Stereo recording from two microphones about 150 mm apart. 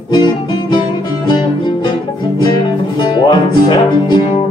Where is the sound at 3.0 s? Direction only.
30° left (ahead or behind).